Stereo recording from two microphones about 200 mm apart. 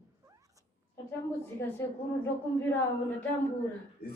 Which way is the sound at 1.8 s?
10° left (ahead or behind).